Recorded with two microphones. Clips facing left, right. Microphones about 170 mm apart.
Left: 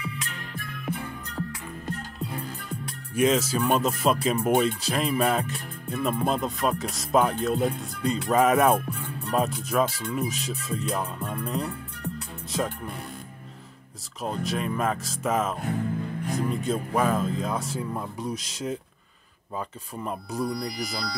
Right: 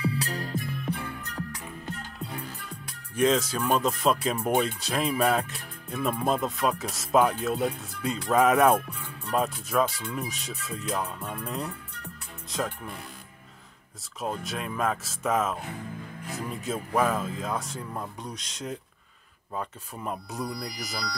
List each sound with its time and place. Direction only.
0.0 s music: 35° right (ahead or behind)
0.8 s music: 10° left (ahead or behind)
3.2 s speech: 5° left (ahead or behind)
8.9 s music: 65° left (ahead or behind)
9.3 s speech: centre (ahead or behind)
14.2 s speech: centre (ahead or behind)